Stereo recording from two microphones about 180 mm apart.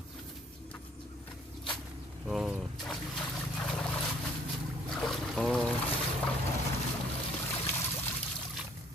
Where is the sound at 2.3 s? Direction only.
5° right (ahead or behind).